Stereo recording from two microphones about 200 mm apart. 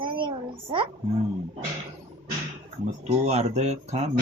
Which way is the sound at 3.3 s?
35° right (ahead or behind).